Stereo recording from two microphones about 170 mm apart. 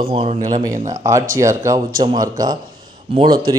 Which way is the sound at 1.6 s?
15° right (ahead or behind).